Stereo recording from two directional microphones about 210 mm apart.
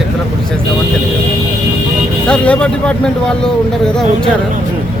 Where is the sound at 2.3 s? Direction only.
5° left (ahead or behind).